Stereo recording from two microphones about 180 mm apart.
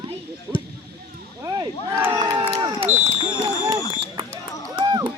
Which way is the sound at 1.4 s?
20° right (ahead or behind).